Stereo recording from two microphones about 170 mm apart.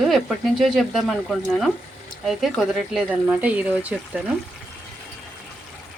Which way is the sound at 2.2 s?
Centre (ahead or behind).